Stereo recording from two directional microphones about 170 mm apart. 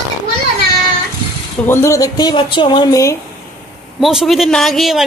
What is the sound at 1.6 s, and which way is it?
Speech, 15° left (ahead or behind).